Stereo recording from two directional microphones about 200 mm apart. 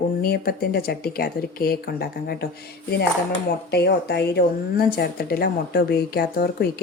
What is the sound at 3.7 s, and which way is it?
Speech, 55° left (ahead or behind).